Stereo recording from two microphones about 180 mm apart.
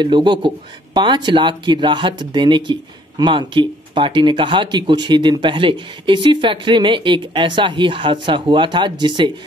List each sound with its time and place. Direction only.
0.0 s speech: 25° right (ahead or behind)